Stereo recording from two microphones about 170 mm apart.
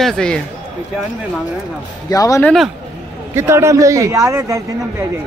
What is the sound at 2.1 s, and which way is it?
Speech, 20° left (ahead or behind).